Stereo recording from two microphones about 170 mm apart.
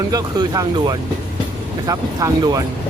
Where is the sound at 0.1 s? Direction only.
20° right (ahead or behind).